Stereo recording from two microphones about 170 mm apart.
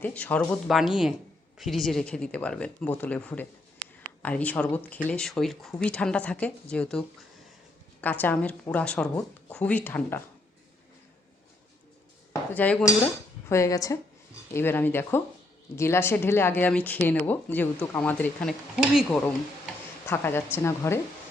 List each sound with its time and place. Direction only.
0.0 s a woman's voice: 10° left (ahead or behind)
8.0 s a woman's voice: 10° left (ahead or behind)
12.3 s cutlery: 10° left (ahead or behind)
13.5 s a woman's voice: 20° left (ahead or behind); by 19.3 s 5° left (ahead or behind)
20.1 s a woman's voice: 15° left (ahead or behind)